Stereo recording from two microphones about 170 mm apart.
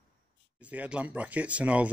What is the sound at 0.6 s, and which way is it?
Speech, 10° right (ahead or behind).